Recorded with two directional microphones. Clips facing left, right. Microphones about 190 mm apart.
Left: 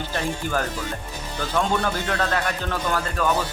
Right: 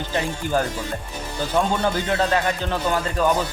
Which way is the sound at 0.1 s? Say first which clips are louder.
Right 4 dB; 15° right (ahead or behind).